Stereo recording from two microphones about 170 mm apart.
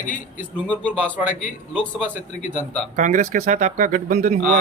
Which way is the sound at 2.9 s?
45° right (ahead or behind).